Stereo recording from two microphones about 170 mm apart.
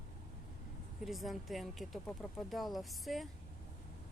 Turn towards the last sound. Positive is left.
turn(degrees=0)  # may be behind; listen again after turning